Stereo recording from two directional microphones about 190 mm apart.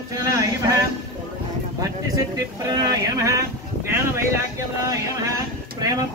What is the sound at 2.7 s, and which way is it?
Speech, 15° right (ahead or behind).